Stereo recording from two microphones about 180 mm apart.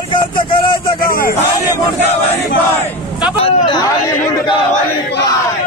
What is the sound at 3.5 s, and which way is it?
Speech, 30° left (ahead or behind).